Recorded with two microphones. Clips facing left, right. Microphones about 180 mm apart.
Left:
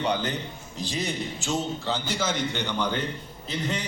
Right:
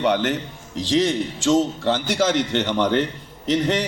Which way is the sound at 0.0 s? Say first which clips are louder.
Right 7 dB; 90° right.